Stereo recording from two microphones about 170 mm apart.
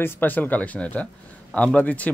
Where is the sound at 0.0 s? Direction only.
10° left (ahead or behind).